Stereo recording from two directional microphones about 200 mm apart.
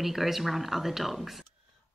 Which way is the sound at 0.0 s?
Centre (ahead or behind).